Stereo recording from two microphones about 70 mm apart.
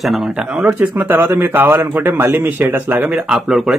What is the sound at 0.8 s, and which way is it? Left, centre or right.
Speech, right.